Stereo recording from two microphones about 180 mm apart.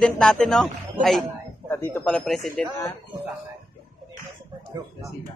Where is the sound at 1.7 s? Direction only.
15° left (ahead or behind).